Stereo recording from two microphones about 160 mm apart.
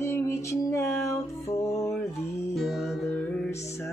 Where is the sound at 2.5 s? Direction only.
Centre (ahead or behind).